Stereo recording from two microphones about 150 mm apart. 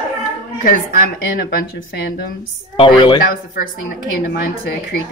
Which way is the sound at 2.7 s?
35° left (ahead or behind).